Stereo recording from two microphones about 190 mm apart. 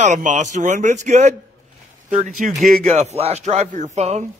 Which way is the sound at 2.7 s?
40° right (ahead or behind).